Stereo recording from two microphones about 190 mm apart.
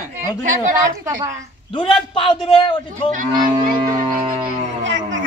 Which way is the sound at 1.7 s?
25° left (ahead or behind).